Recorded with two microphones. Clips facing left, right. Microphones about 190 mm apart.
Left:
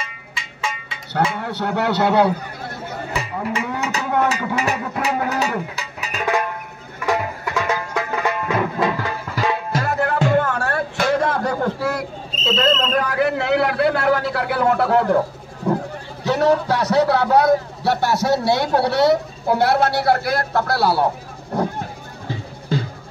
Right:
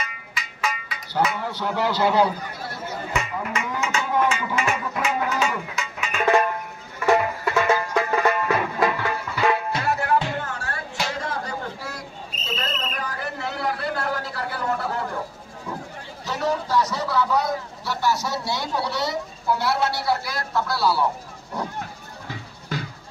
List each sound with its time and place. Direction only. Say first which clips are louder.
0.0 s music: even; 25° left (ahead or behind)
1.4 s a man's voice: left 3 dB; 65° left (ahead or behind)
3.1 s cattle: left 3 dB; 35° left (ahead or behind)
3.8 s a sound: left 2 dB; 35° left (ahead or behind)
8.3 s music: left 1 dB; 25° left (ahead or behind)
8.9 s music: left 2 dB; 40° left (ahead or behind); by 12.1 s 65° left (ahead or behind)
12.4 s a sound: left 12 dB; 90° left; by 15.8 s 65° left (ahead or behind)
16.3 s a man's voice: left 8 dB; 65° left (ahead or behind)
21.5 s a sound: left 8 dB; 55° left (ahead or behind)
22.3 s music: left 8 dB; 30° left (ahead or behind)